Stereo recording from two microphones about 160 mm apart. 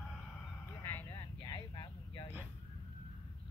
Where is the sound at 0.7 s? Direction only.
15° left (ahead or behind).